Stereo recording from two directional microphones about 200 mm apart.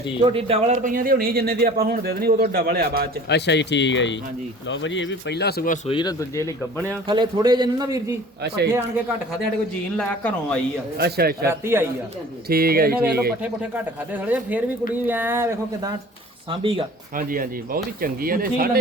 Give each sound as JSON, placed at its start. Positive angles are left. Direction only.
{"t": 0.3, "sound": "speech", "side_deg": -25}
{"t": 3.2, "sound": "speech", "side_deg": 60}
{"t": 5.9, "sound": "speech", "side_deg": 20}
{"t": 7.1, "sound": "a man's voice", "side_deg": -25}
{"t": 8.4, "sound": "speech", "side_deg": -55}
{"t": 10.0, "sound": "speech", "side_deg": 5}
{"t": 10.9, "sound": "speech", "side_deg": -50}
{"t": 11.4, "sound": "speech", "side_deg": -10}
{"t": 12.5, "sound": "speech", "side_deg": -50}
{"t": 13.4, "sound": "speech", "side_deg": -10}
{"t": 16.5, "sound": "a man's voice", "side_deg": -25}
{"t": 17.2, "sound": "speech", "side_deg": -45}